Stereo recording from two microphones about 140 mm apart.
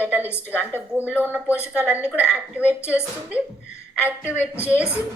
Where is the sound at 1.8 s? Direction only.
10° right (ahead or behind).